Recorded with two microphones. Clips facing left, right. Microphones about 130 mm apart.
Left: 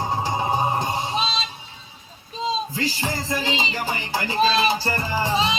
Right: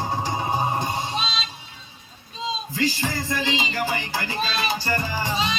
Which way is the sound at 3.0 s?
20° left (ahead or behind).